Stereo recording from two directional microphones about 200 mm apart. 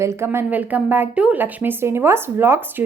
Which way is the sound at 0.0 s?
15° right (ahead or behind).